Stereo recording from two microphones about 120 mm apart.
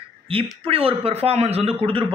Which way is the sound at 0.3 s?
50° right (ahead or behind).